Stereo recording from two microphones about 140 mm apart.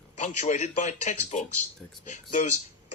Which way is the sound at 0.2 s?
55° left (ahead or behind).